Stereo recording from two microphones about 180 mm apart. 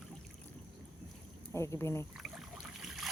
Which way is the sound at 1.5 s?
15° left (ahead or behind).